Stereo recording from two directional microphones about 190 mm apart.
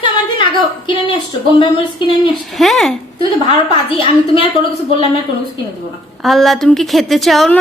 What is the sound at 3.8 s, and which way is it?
Speech, 30° left (ahead or behind).